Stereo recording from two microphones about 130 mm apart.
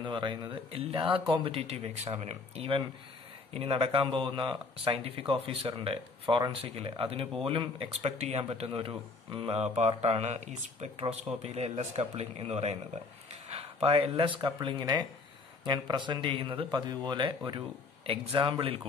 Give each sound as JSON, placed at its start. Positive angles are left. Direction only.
{"t": 0.0, "sound": "speech", "side_deg": -40}